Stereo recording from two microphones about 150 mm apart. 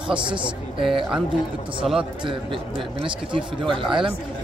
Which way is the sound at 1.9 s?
Centre (ahead or behind).